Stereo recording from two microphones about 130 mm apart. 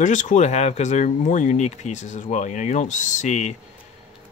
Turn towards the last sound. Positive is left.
turn(degrees=60)  # may be behind; listen again after turning